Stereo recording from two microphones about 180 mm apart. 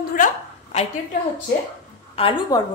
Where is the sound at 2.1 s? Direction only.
30° left (ahead or behind).